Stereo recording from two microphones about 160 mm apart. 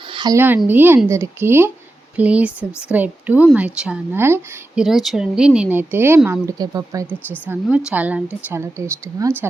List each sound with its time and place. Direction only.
0.1 s a sound: 30° right (ahead or behind)
0.3 s speech: 10° right (ahead or behind)
4.8 s speech: centre (ahead or behind); by 7.2 s 20° right (ahead or behind)
7.4 s speech: 10° right (ahead or behind)